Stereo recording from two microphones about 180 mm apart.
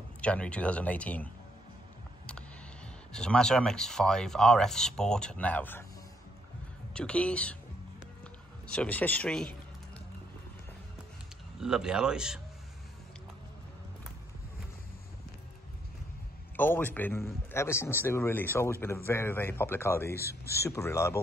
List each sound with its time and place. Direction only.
0.2 s a man's voice: 5° left (ahead or behind)
3.1 s speech: 5° left (ahead or behind)
6.9 s a man's voice: 5° left (ahead or behind)
8.7 s a man's voice: 10° left (ahead or behind)
11.6 s speech: 5° right (ahead or behind)
16.5 s a man's voice: 10° left (ahead or behind)